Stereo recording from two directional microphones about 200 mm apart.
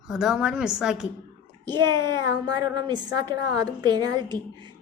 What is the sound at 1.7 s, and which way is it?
A woman's voice, 20° right (ahead or behind).